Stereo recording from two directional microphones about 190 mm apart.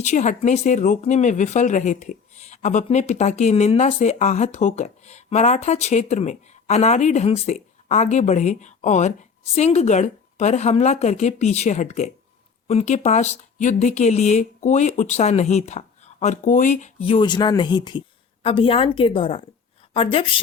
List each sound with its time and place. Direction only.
0.0 s speech: 40° left (ahead or behind)
17.2 s a woman's voice: 25° left (ahead or behind)